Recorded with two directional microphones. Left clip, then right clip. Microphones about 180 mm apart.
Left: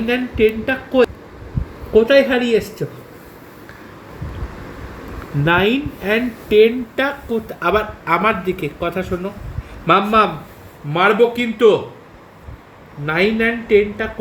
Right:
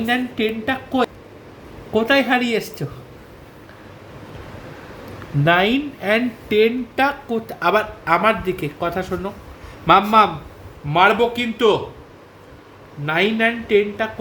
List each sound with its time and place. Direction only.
0.1 s speech: 20° right (ahead or behind)
5.5 s speech: 25° right (ahead or behind); by 10.2 s 45° right (ahead or behind)
10.9 s speech: 30° right (ahead or behind)
13.1 s speech: 25° right (ahead or behind)